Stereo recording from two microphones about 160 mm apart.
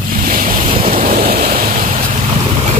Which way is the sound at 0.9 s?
55° right (ahead or behind).